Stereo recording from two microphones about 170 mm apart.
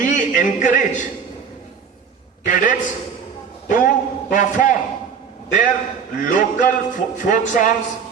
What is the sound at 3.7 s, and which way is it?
A man's voice, 50° left (ahead or behind).